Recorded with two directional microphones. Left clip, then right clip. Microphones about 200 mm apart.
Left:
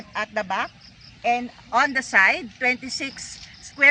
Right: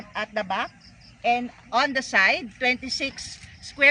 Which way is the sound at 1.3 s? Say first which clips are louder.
Left 1 dB; 30° right (ahead or behind).